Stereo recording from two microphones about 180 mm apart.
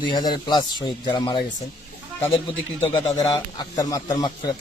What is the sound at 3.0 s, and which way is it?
Speech, 20° left (ahead or behind).